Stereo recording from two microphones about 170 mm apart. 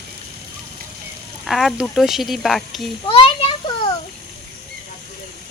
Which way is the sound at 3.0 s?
30° left (ahead or behind).